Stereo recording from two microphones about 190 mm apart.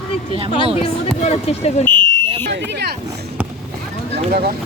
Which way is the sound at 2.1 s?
25° right (ahead or behind).